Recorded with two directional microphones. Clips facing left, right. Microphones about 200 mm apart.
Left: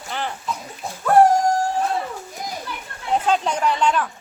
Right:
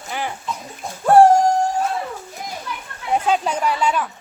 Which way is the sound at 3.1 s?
10° right (ahead or behind).